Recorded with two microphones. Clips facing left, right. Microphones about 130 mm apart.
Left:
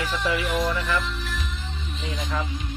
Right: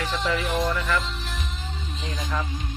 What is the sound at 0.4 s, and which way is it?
Speech, 20° right (ahead or behind).